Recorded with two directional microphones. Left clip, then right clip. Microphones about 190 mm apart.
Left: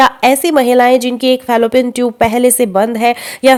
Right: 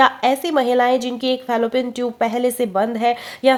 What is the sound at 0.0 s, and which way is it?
A woman's voice, 35° left (ahead or behind).